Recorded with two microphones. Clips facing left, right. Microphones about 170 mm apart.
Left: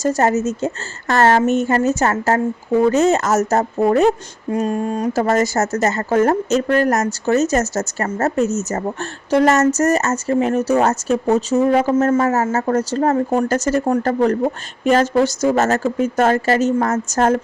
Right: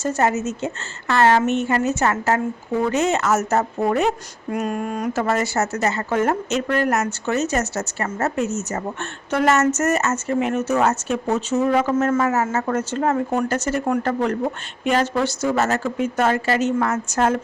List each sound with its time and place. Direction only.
0.0 s a woman's voice: 40° left (ahead or behind)